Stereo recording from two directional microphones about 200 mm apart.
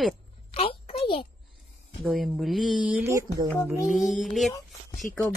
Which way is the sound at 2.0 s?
Centre (ahead or behind).